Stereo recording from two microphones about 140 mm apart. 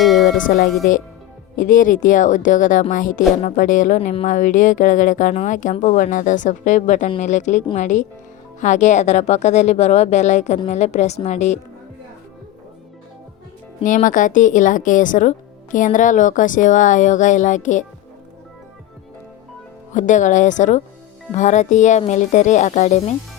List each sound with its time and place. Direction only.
0.0 s music: centre (ahead or behind)
0.3 s speech: 80° left
1.5 s speech: 70° left (ahead or behind); by 11.6 s 55° left (ahead or behind)
13.8 s speech: 70° left (ahead or behind)
19.9 s speech: 65° left (ahead or behind)